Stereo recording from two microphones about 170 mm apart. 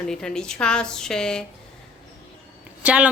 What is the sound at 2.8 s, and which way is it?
Speech, 10° right (ahead or behind).